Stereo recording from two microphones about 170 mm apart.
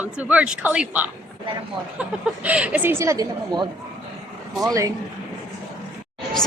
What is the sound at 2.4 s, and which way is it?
A woman's voice, 10° right (ahead or behind).